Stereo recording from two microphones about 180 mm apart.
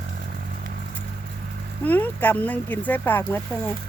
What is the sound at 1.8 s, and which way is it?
Speech, 10° left (ahead or behind).